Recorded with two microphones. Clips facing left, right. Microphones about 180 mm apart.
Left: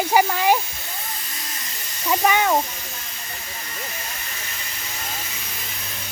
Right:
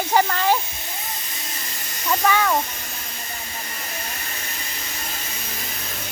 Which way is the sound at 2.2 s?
20° left (ahead or behind).